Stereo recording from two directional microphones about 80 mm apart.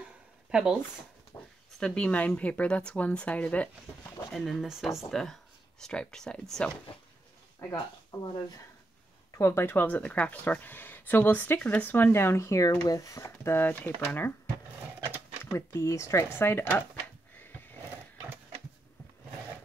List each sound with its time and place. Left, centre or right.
0.5 s speech: centre
1.3 s a sound: left
1.8 s speech: centre
4.3 s speech: centre
7.7 s speech: left
9.4 s speech: left
15.5 s speech: left
17.4 s a sound: left